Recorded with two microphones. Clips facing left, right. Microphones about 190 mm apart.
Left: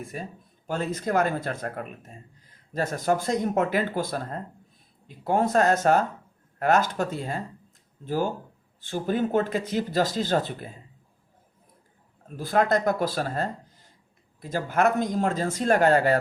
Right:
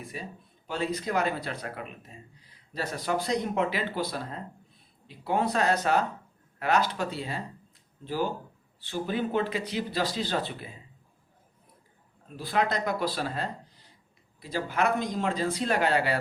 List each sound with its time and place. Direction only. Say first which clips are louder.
0.0 s speech: left 4 dB; 45° left (ahead or behind)
12.4 s speech: left 5 dB; 45° left (ahead or behind)